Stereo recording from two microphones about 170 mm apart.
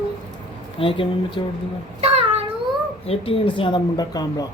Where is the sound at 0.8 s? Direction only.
30° left (ahead or behind).